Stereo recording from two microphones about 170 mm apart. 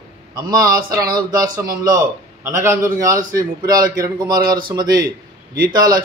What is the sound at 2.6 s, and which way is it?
Speech, 20° right (ahead or behind).